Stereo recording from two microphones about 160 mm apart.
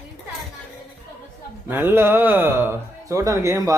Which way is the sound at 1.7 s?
15° right (ahead or behind).